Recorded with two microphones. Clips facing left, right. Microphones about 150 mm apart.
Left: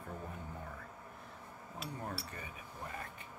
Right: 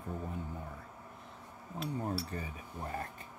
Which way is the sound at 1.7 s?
20° right (ahead or behind).